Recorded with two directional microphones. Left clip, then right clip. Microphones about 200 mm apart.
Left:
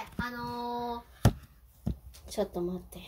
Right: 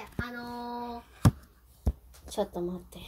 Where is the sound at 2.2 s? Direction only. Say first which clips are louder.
Even; 15° right (ahead or behind).